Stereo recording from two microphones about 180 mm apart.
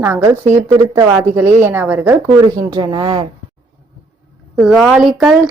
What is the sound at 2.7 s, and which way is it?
Speech, 25° right (ahead or behind).